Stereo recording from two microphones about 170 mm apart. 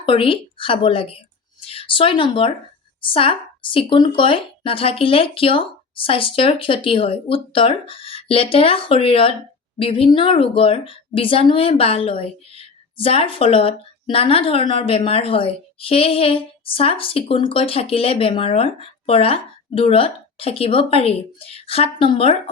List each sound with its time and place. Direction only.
0.0 s speech: 30° left (ahead or behind)